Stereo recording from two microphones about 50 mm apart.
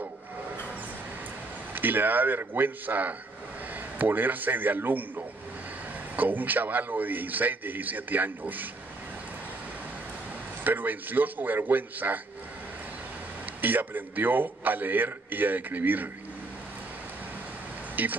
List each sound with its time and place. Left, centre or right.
1.7 s a man's voice: right
10.6 s a man's voice: right
13.6 s a man's voice: right
18.0 s a man's voice: right